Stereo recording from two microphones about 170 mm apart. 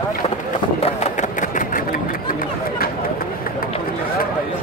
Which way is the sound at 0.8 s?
45° left (ahead or behind).